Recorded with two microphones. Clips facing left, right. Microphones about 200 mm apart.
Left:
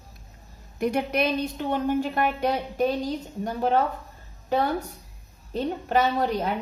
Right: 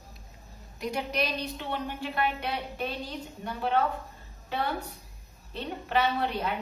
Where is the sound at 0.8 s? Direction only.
55° left (ahead or behind).